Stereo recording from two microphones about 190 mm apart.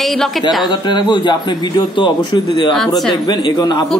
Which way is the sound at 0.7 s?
25° left (ahead or behind).